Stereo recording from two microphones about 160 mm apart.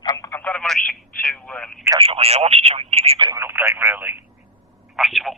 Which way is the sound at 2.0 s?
40° right (ahead or behind).